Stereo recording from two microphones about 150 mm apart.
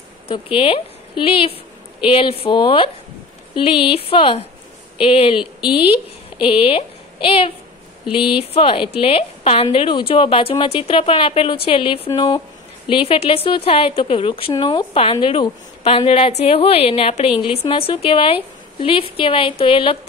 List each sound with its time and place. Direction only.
0.3 s a woman's voice: 35° left (ahead or behind)